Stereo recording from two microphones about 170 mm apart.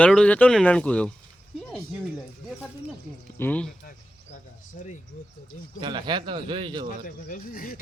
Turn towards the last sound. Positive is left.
turn(degrees=60)  # may be behind; listen again after turning